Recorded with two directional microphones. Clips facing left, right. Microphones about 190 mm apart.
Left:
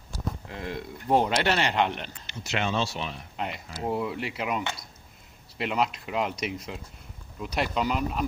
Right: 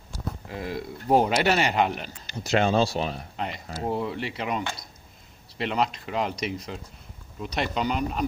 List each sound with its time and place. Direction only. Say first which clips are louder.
0.5 s speech: right 3 dB; 5° right (ahead or behind)
2.2 s speech: right 7 dB; 35° right (ahead or behind)
3.3 s speech: right 1 dB; centre (ahead or behind)